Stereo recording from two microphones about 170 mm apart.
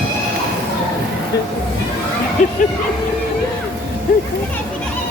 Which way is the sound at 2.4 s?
50° left (ahead or behind).